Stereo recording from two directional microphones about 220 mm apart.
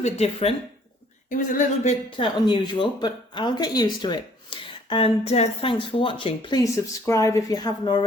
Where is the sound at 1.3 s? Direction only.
35° left (ahead or behind).